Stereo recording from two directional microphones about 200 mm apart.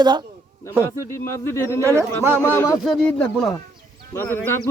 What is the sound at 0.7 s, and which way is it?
Speech, 15° right (ahead or behind).